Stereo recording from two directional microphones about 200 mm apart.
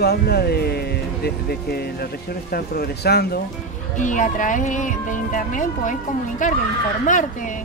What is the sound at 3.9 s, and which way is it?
Speech, 40° left (ahead or behind).